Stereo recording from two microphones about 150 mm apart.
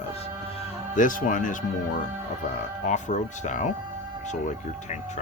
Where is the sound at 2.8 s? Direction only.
55° left (ahead or behind).